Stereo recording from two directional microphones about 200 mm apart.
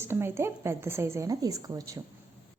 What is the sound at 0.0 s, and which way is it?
A woman's voice, 10° right (ahead or behind).